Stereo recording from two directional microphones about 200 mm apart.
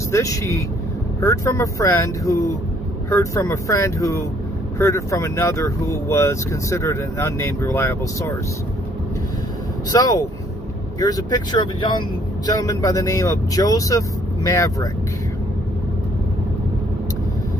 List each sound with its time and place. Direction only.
0.1 s speech: 15° left (ahead or behind)
9.8 s speech: 15° left (ahead or behind)